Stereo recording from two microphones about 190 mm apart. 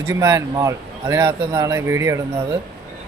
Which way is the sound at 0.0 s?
15° right (ahead or behind).